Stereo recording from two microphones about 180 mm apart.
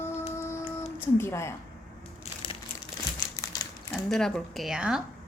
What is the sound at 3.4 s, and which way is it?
Crumpling, 20° left (ahead or behind).